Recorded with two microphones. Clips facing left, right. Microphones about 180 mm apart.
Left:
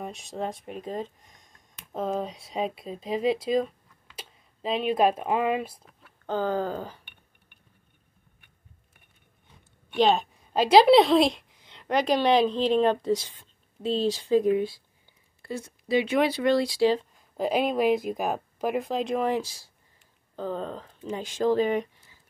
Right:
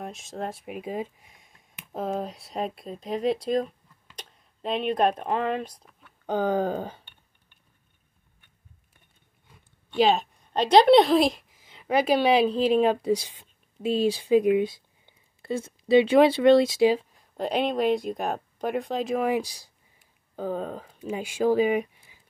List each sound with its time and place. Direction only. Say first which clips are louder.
0.0 s speech: left 1 dB; centre (ahead or behind)
6.2 s speech: right 2 dB; 15° right (ahead or behind)
9.9 s a woman's voice: even; centre (ahead or behind); by 16.9 s 20° right (ahead or behind)
16.9 s speech: even; 5° right (ahead or behind)